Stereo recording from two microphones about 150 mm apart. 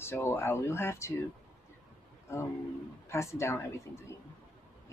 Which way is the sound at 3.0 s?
20° left (ahead or behind).